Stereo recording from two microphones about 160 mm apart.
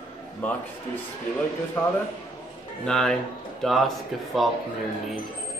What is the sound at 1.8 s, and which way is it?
Speech, 15° left (ahead or behind).